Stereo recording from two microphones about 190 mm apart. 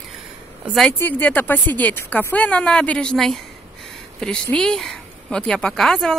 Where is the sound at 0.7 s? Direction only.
10° left (ahead or behind).